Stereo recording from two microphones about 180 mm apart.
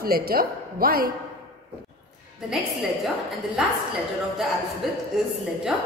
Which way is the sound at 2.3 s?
Centre (ahead or behind).